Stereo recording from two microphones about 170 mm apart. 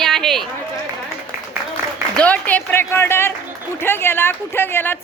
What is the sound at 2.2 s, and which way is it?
Speech, 10° left (ahead or behind).